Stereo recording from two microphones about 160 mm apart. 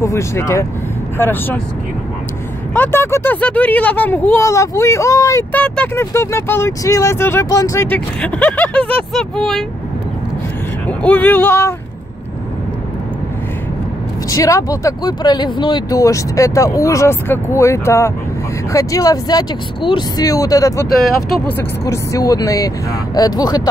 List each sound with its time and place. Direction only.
0.0 s speech: 20° left (ahead or behind)
2.7 s speech: 10° left (ahead or behind)
8.2 s speech: 5° left (ahead or behind)
10.9 s speech: 10° left (ahead or behind)
14.3 s speech: 20° left (ahead or behind)